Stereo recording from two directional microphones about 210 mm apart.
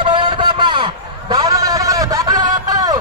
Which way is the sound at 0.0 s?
25° right (ahead or behind).